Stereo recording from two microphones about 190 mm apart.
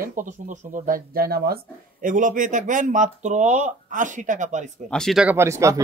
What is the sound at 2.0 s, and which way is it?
Speech, 45° right (ahead or behind).